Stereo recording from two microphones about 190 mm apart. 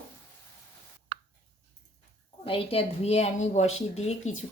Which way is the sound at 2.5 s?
30° left (ahead or behind).